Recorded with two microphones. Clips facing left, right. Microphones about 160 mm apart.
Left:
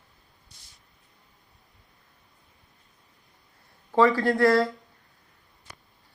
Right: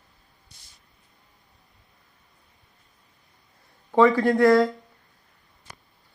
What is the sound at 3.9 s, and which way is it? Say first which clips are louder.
Speech: right 3 dB; 15° right (ahead or behind).